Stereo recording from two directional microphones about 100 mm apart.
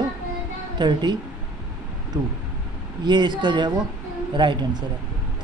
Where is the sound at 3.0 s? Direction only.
45° right (ahead or behind).